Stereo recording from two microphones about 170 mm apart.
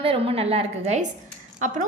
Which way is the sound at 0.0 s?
35° right (ahead or behind).